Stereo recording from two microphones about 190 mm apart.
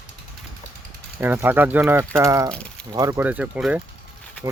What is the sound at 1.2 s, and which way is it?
Speech, 10° right (ahead or behind).